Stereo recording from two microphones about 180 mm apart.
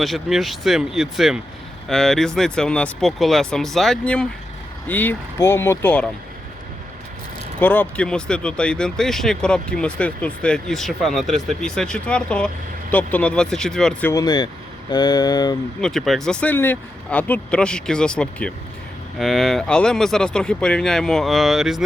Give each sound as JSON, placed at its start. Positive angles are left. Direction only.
{"t": 0.0, "sound": "speech", "side_deg": 0}
{"t": 7.6, "sound": "speech", "side_deg": 10}
{"t": 14.2, "sound": "speech", "side_deg": 20}
{"t": 15.8, "sound": "speech", "side_deg": 0}